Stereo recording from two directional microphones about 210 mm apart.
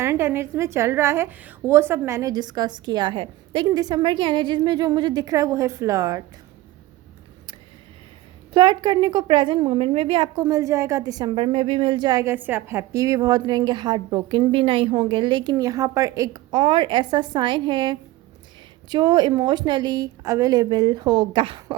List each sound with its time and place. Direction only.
0.0 s a woman's voice: 10° right (ahead or behind)
8.5 s a woman's voice: 20° right (ahead or behind)